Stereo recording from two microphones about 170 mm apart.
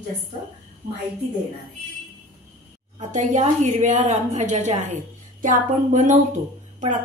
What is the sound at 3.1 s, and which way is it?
A woman's voice, 45° right (ahead or behind).